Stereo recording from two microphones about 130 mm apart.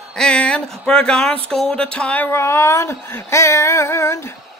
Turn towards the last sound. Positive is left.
turn(degrees=20)  # may be behind; listen again after turning